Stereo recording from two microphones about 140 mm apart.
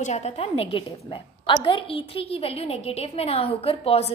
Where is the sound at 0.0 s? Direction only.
55° left (ahead or behind).